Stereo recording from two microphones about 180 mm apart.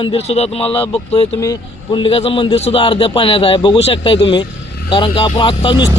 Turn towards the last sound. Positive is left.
turn(degrees=25)  # may be behind; listen again after turning